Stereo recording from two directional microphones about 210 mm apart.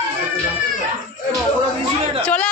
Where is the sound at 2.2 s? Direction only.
5° left (ahead or behind).